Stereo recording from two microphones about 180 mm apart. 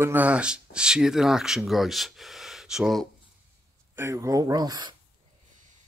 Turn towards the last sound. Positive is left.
turn(degrees=-25)  # may be behind; listen again after turning